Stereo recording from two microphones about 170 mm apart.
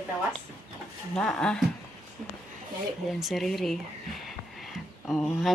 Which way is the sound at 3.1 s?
Centre (ahead or behind).